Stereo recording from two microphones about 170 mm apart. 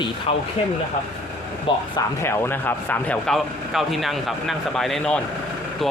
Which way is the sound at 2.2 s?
10° left (ahead or behind).